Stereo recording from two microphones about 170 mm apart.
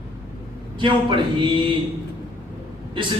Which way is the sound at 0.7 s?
30° right (ahead or behind).